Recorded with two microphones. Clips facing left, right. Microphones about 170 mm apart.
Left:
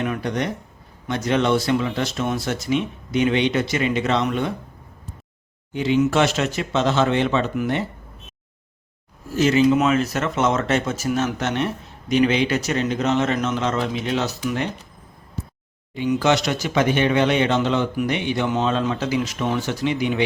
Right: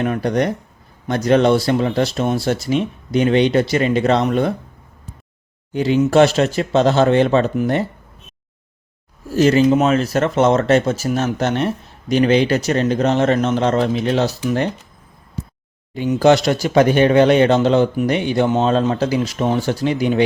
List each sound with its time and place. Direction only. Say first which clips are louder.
0.0 s speech: right 6 dB; 40° right (ahead or behind)
5.7 s speech: right 5 dB; 40° right (ahead or behind)
9.3 s speech: right 3 dB; 40° right (ahead or behind)
16.1 s speech: right 7 dB; 35° right (ahead or behind)